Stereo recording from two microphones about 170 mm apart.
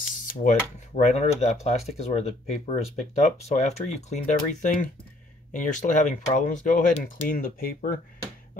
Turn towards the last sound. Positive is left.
turn(degrees=60)  # may be behind; listen again after turning